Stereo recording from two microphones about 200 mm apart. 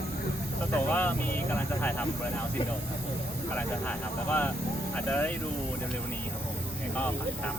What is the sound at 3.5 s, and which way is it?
Speech, 10° left (ahead or behind).